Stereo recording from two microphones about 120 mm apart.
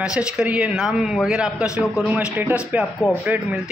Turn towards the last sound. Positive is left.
turn(degrees=-15)  # may be behind; listen again after turning